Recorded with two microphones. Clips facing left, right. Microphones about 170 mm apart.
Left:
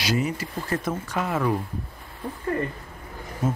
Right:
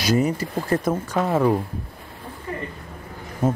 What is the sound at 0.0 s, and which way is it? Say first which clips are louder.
Speech: right 5 dB; 40° right (ahead or behind).